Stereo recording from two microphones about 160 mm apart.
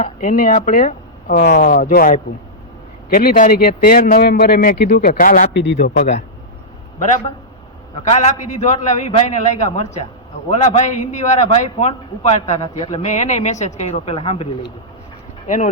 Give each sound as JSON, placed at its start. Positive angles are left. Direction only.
{"t": 0.0, "sound": "speech", "side_deg": 50}
{"t": 4.2, "sound": "a man's voice", "side_deg": 80}
{"t": 5.9, "sound": "a man's voice", "side_deg": 45}
{"t": 8.1, "sound": "a man's voice", "side_deg": 45}
{"t": 12.5, "sound": "a man's voice", "side_deg": 25}
{"t": 12.9, "sound": "a man's voice", "side_deg": 45}
{"t": 15.4, "sound": "a man's voice", "side_deg": 55}